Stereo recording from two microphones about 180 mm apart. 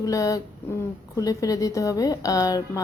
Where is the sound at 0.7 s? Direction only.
10° left (ahead or behind).